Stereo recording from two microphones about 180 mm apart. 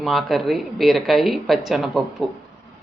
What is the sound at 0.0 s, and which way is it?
Speech, centre (ahead or behind).